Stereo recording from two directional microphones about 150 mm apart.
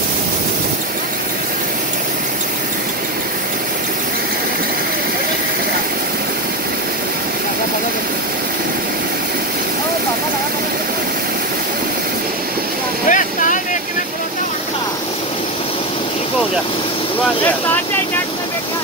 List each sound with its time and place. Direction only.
13.1 s boat: 55° left (ahead or behind)